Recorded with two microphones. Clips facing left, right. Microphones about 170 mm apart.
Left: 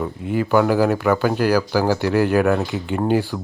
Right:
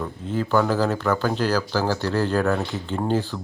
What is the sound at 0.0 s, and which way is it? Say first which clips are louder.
Speech: left 4 dB; 10° left (ahead or behind).